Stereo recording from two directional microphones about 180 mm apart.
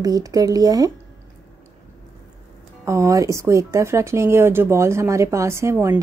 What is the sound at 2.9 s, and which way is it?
Speech, 15° right (ahead or behind).